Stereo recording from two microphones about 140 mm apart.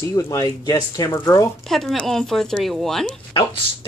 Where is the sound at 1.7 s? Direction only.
Centre (ahead or behind).